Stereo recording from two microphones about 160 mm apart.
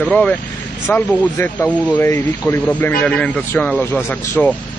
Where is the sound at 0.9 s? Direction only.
10° left (ahead or behind).